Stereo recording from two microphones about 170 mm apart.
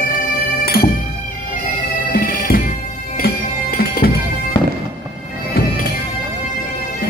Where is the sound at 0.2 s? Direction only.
60° left (ahead or behind).